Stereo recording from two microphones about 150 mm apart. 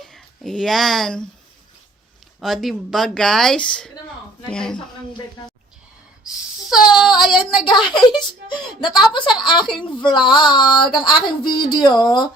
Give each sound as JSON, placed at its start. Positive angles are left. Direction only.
{"t": 0.0, "sound": "speech", "side_deg": 5}
{"t": 2.4, "sound": "speech", "side_deg": 0}
{"t": 6.9, "sound": "child singing", "side_deg": 0}
{"t": 7.6, "sound": "a woman's voice", "side_deg": 30}